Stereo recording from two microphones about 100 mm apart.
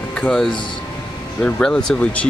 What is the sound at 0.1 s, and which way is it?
Speech, 5° left (ahead or behind).